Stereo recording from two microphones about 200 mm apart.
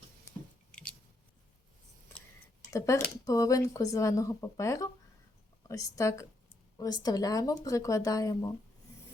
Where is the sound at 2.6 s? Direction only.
15° left (ahead or behind).